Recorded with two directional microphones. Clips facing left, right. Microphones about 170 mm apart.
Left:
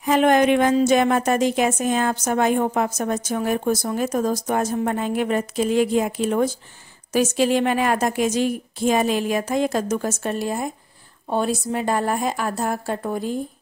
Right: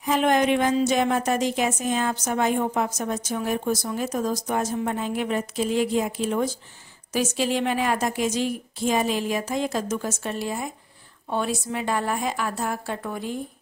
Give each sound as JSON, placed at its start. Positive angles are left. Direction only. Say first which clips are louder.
{"t": 0.0, "sound": "a woman's voice", "louder": "left 4 dB", "side_deg": 55}